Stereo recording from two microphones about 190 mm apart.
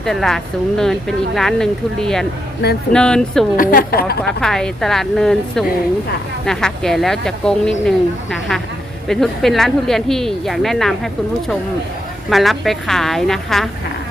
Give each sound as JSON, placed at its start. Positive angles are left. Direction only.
{"t": 0.0, "sound": "speech", "side_deg": 0}
{"t": 3.6, "sound": "a woman's voice", "side_deg": 50}
{"t": 4.2, "sound": "speech", "side_deg": 5}